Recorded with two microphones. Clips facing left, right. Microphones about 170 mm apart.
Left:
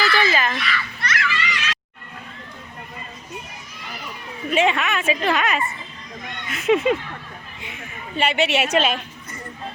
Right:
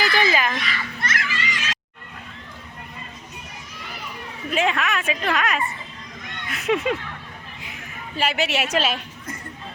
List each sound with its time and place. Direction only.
0.0 s a sound: 15° right (ahead or behind)
0.6 s children playing: 40° right (ahead or behind)
4.5 s a woman's voice: centre (ahead or behind)